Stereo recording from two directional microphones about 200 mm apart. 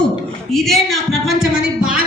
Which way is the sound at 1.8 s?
5° right (ahead or behind).